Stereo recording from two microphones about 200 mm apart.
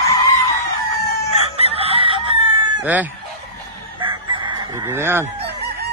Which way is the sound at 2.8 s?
10° right (ahead or behind).